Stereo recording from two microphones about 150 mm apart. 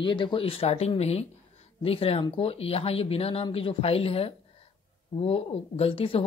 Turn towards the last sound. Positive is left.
turn(degrees=40)  # may be behind; listen again after turning